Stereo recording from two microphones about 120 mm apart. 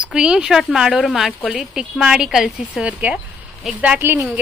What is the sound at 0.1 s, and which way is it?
Speech, 5° right (ahead or behind).